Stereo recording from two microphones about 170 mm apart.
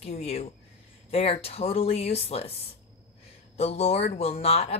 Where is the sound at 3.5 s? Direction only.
35° left (ahead or behind).